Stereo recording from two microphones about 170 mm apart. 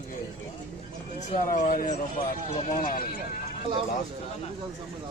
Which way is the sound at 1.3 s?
50° left (ahead or behind).